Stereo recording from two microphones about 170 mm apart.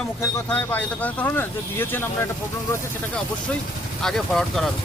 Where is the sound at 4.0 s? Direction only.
5° left (ahead or behind).